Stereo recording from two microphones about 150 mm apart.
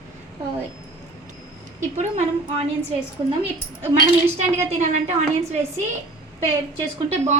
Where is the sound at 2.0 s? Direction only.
50° right (ahead or behind).